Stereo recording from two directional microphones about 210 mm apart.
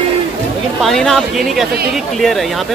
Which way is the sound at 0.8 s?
Centre (ahead or behind).